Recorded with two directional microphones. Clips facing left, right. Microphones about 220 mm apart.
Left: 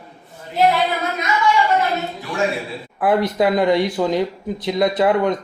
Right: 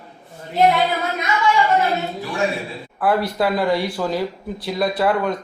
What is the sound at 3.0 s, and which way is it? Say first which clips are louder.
Speech: left 2 dB; 20° left (ahead or behind).